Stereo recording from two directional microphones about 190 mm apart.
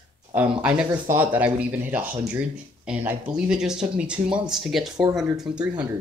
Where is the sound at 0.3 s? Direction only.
10° right (ahead or behind).